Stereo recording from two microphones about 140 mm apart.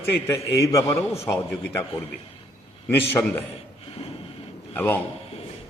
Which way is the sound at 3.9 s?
45° left (ahead or behind).